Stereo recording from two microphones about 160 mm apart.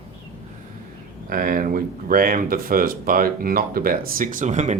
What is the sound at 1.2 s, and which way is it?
Speech, 60° right (ahead or behind).